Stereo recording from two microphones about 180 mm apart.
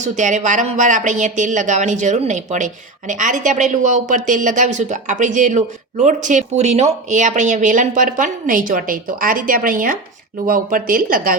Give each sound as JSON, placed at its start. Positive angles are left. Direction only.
{"t": 0.0, "sound": "speech", "side_deg": -40}